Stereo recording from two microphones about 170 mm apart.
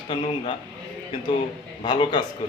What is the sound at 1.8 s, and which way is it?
Speech, 30° left (ahead or behind).